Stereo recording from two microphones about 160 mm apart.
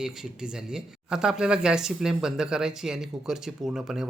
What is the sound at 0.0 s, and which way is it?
Speech, 5° right (ahead or behind).